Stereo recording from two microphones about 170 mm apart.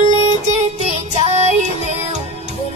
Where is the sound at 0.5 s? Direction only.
40° right (ahead or behind).